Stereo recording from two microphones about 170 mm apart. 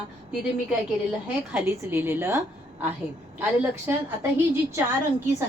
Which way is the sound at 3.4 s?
10° right (ahead or behind).